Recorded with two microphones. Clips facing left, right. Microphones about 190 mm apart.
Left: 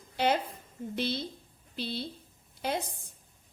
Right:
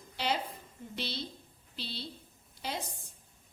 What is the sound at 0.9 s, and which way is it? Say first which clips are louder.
A woman's voice: left 6 dB; 50° left (ahead or behind).